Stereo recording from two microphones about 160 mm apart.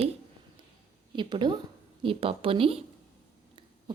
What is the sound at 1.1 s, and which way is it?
A woman's voice, 30° right (ahead or behind).